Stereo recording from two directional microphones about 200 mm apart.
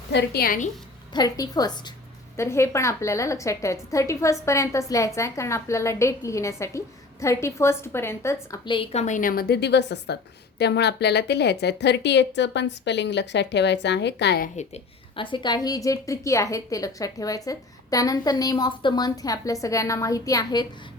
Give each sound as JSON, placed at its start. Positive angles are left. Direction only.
{"t": 0.1, "sound": "a woman's voice", "side_deg": 55}
{"t": 1.1, "sound": "a woman's voice", "side_deg": 20}
{"t": 14.5, "sound": "a woman's voice", "side_deg": 35}